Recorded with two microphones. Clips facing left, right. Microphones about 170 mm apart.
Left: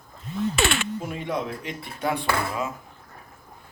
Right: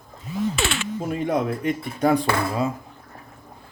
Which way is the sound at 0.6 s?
60° left (ahead or behind).